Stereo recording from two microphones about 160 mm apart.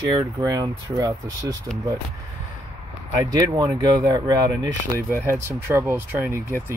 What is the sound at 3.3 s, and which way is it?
Speech, 20° right (ahead or behind).